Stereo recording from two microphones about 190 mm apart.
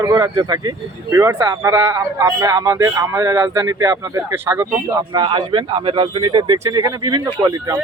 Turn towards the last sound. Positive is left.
turn(degrees=-20)  # may be behind; listen again after turning